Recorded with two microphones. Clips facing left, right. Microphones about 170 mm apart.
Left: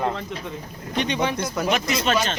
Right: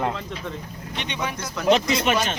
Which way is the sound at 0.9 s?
40° left (ahead or behind).